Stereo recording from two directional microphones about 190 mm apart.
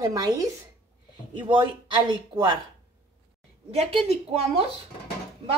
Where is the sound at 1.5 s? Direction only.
25° right (ahead or behind).